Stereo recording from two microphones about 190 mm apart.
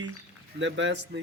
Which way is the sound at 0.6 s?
70° right (ahead or behind).